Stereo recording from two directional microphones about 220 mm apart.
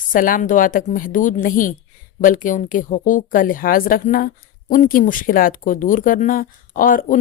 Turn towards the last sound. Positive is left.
turn(degrees=40)  # may be behind; listen again after turning